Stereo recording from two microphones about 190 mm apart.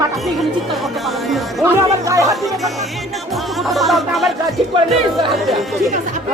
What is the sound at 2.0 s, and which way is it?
Music, 15° right (ahead or behind).